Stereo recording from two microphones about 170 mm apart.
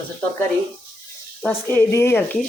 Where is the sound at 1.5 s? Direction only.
15° left (ahead or behind).